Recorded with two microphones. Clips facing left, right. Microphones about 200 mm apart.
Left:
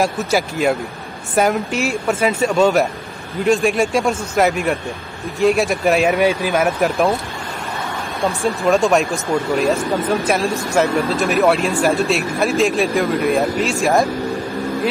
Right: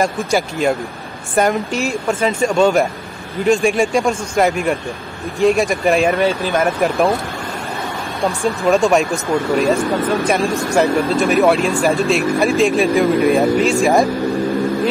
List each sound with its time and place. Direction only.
0.0 s speech: 5° left (ahead or behind)
1.7 s speech: 35° right (ahead or behind)
2.0 s speech: 10° left (ahead or behind)
8.2 s speech: centre (ahead or behind)